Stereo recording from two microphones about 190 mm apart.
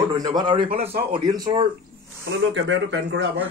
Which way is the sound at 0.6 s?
50° right (ahead or behind).